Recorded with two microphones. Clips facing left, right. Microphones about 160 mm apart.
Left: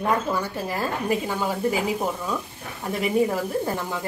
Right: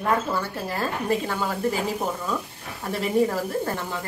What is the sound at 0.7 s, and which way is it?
Speech, 10° left (ahead or behind).